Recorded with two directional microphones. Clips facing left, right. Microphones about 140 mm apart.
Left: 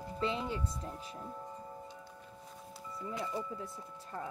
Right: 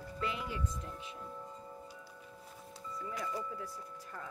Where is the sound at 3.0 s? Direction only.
25° left (ahead or behind).